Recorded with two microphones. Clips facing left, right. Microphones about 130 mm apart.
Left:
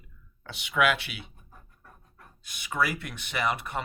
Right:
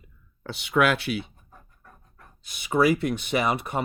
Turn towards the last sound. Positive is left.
turn(degrees=-20)  # may be behind; listen again after turning